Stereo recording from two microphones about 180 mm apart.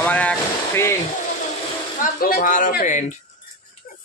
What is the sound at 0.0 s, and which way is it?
Vehicle, 5° left (ahead or behind).